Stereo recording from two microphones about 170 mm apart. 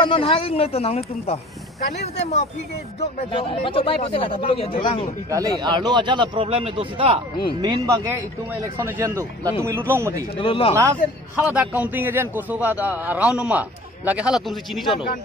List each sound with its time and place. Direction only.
0.0 s speech: 30° left (ahead or behind)
3.0 s speech: 35° left (ahead or behind)
5.3 s speech: 25° right (ahead or behind)
7.6 s a man's voice: 20° right (ahead or behind)
10.3 s speech: 35° left (ahead or behind)
10.7 s a man's voice: 15° right (ahead or behind); by 15.0 s centre (ahead or behind)